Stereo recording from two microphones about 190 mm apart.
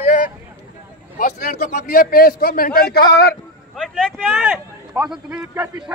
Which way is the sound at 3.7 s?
Centre (ahead or behind).